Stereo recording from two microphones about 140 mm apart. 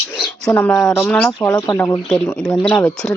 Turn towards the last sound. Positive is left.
turn(degrees=5)  # may be behind; listen again after turning